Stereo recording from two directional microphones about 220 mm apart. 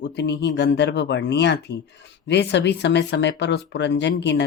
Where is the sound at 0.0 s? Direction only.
50° left (ahead or behind).